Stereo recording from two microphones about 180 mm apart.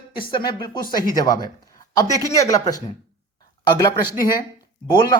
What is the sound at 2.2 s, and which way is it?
Speech, 15° left (ahead or behind).